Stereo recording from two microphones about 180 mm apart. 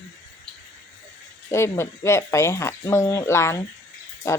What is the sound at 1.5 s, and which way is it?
Speech, 15° left (ahead or behind).